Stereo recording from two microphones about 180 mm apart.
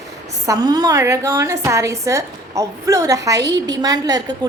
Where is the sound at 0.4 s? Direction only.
20° right (ahead or behind).